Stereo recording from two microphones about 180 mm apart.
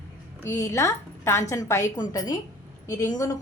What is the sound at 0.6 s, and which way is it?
A woman's voice, 15° left (ahead or behind).